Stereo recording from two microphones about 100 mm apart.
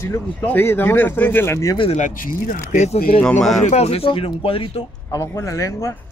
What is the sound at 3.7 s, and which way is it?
Speech, 80° left.